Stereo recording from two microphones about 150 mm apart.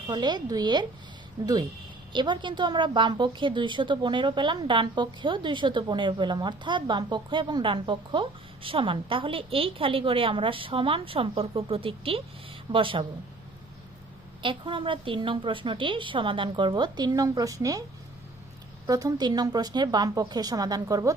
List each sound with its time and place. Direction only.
0.1 s a woman's voice: 30° right (ahead or behind)
14.4 s a woman's voice: 35° right (ahead or behind)
18.9 s a woman's voice: 25° right (ahead or behind)